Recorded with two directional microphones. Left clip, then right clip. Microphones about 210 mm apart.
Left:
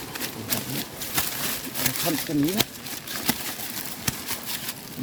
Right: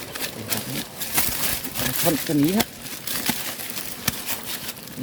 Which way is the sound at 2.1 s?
35° right (ahead or behind).